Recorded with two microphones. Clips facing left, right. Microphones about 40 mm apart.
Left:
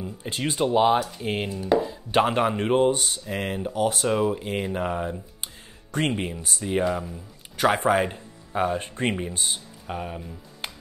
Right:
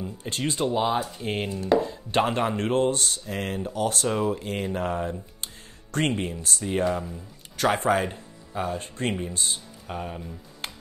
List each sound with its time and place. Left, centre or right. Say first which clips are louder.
0.0 s speech: even; centre
1.2 s dishes: left 1 dB; centre
1.7 s speech: even; centre
8.7 s speech: left 2 dB; left
9.4 s speech: left 1 dB; centre